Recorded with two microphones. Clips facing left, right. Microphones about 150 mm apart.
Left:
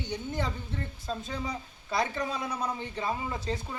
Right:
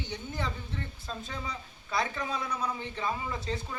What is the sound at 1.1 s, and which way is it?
A man's voice, 30° left (ahead or behind).